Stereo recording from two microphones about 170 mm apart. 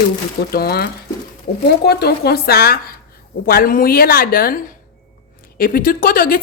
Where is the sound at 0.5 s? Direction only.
65° left (ahead or behind).